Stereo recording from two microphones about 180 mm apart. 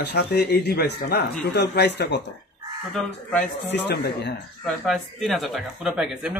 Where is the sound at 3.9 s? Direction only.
65° left (ahead or behind).